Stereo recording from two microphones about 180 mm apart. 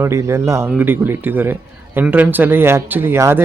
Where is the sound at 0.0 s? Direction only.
15° right (ahead or behind).